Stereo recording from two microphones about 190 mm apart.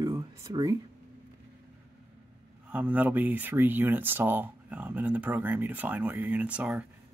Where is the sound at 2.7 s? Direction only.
10° right (ahead or behind).